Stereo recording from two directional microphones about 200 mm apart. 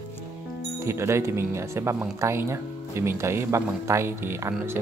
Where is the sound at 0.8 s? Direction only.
15° right (ahead or behind).